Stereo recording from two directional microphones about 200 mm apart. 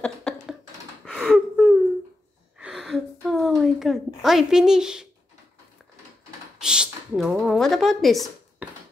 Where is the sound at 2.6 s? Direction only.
5° right (ahead or behind).